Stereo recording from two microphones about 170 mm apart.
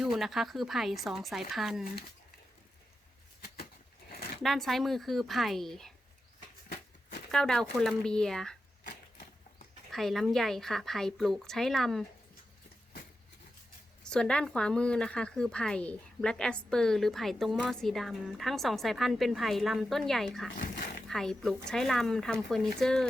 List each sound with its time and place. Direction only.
0.0 s speech: centre (ahead or behind)
4.4 s speech: centre (ahead or behind)
7.3 s speech: 5° left (ahead or behind)
9.9 s speech: centre (ahead or behind)
14.0 s speech: 5° left (ahead or behind)
20.6 s a sound: 50° left (ahead or behind)
21.1 s speech: centre (ahead or behind)